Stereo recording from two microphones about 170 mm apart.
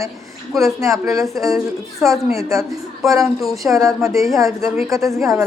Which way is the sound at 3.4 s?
Centre (ahead or behind).